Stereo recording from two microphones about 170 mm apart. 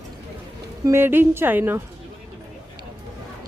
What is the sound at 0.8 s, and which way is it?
Speech, 15° right (ahead or behind).